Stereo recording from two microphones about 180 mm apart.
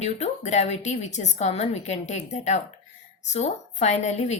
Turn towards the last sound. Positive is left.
turn(degrees=40)  # may be behind; listen again after turning